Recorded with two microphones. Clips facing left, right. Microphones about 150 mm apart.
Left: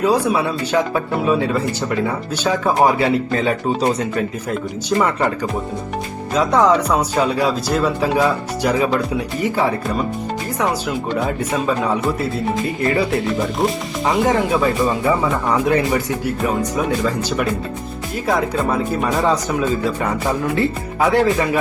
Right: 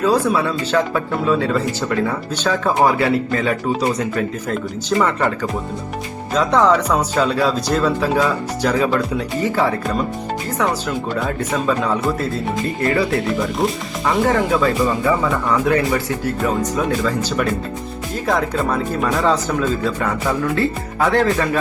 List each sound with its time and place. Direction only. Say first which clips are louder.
0.0 s speech: even; 15° left (ahead or behind)
4.9 s speech: even; 10° left (ahead or behind)
12.8 s speech: right 1 dB; 20° left (ahead or behind)
13.6 s speech: left 1 dB; centre (ahead or behind)
14.0 s speech: even; 20° left (ahead or behind)
18.3 s speech: left 1 dB; 5° left (ahead or behind)
19.2 s speech: even; 15° left (ahead or behind)